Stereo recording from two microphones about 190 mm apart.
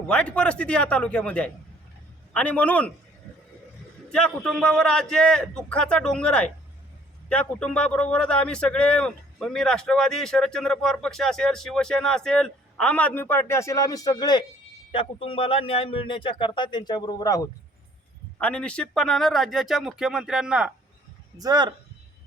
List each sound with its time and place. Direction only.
0.1 s a man's voice: 5° left (ahead or behind)
4.1 s a man's voice: 5° left (ahead or behind)
18.3 s speech: 5° left (ahead or behind)
21.3 s speech: 20° right (ahead or behind)